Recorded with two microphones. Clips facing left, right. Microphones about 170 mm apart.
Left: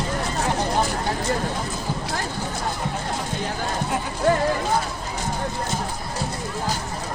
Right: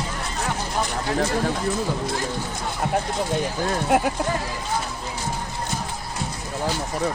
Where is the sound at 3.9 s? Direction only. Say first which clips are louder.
Right 7 dB; 80° right.